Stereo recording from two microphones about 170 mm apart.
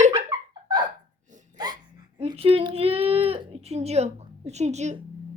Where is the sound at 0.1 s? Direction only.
25° right (ahead or behind); by 4.9 s 40° right (ahead or behind).